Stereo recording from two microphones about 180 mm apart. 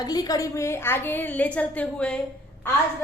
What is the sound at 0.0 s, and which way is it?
A woman's voice, 20° left (ahead or behind).